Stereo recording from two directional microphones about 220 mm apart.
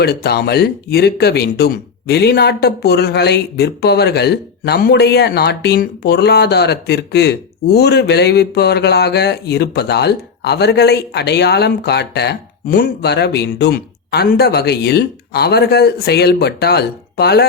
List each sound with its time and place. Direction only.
0.0 s speech: 45° left (ahead or behind)